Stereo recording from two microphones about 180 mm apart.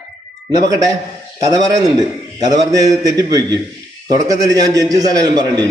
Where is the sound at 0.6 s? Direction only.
20° right (ahead or behind).